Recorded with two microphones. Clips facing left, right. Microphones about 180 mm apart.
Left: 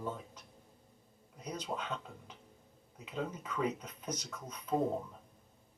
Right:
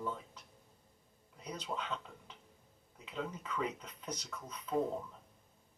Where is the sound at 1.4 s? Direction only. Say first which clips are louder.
Left 2 dB; 45° left (ahead or behind).